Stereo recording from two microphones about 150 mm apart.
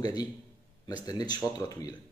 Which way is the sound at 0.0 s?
25° left (ahead or behind).